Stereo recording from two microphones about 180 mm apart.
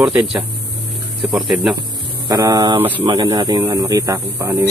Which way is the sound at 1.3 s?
5° right (ahead or behind).